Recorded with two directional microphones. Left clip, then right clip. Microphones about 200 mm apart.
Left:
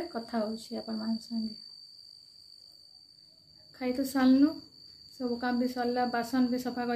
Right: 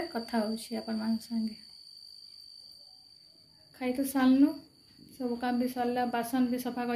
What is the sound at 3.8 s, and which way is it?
A woman's voice, 5° right (ahead or behind).